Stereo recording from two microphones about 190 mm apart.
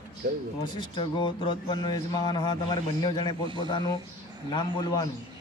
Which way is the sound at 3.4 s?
25° right (ahead or behind).